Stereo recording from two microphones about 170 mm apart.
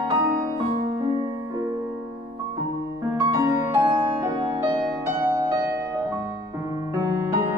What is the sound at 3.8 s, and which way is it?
Music, 30° right (ahead or behind).